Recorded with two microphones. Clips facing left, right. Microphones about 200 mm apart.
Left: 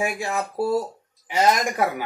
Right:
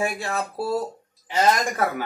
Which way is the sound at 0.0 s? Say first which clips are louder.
Left 1 dB; 15° left (ahead or behind).